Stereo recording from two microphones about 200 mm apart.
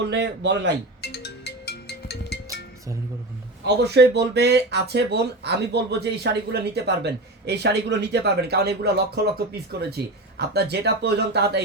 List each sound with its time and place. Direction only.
0.0 s speech: 60° right (ahead or behind)
1.0 s music: 55° left (ahead or behind)
2.5 s music: 15° right (ahead or behind)
3.8 s speech: 55° right (ahead or behind)